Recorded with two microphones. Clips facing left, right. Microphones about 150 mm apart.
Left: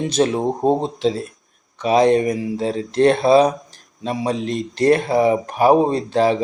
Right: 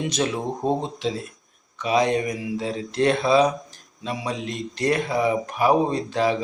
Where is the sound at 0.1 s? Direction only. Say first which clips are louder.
Left 7 dB; 35° left (ahead or behind).